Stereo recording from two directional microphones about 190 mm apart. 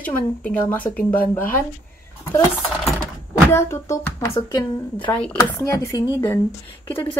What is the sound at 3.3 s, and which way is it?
Speech, 15° left (ahead or behind).